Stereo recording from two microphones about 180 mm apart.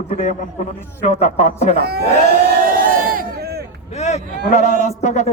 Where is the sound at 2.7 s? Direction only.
50° right (ahead or behind).